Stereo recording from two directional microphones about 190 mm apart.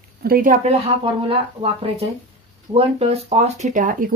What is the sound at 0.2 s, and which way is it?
Speech, 50° right (ahead or behind).